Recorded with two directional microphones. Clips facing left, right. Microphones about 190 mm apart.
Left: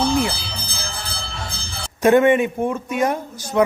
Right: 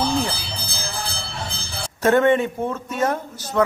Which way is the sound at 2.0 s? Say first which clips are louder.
Left 3 dB; 15° left (ahead or behind).